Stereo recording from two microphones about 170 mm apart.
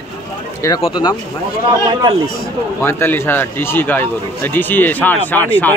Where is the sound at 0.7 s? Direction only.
30° left (ahead or behind).